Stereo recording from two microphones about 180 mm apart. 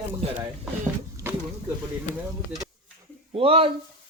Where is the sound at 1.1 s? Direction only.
10° right (ahead or behind).